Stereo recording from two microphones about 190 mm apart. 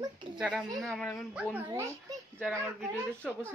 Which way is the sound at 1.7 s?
15° right (ahead or behind).